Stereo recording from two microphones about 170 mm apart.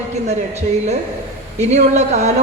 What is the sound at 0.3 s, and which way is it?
Speech, 40° right (ahead or behind).